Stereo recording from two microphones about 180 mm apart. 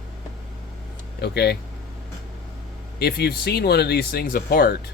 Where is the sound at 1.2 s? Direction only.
65° left (ahead or behind).